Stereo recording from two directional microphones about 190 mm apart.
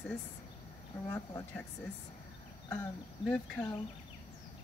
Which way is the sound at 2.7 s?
10° left (ahead or behind).